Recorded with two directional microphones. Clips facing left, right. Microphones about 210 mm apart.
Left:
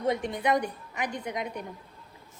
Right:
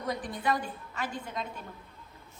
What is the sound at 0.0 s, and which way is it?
A woman's voice, 25° left (ahead or behind).